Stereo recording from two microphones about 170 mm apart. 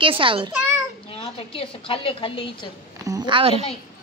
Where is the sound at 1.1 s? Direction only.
35° left (ahead or behind).